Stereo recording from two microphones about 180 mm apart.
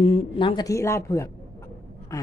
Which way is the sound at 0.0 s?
30° left (ahead or behind).